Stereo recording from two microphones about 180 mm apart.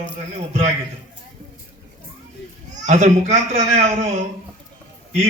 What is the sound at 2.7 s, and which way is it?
A man's voice, 40° right (ahead or behind).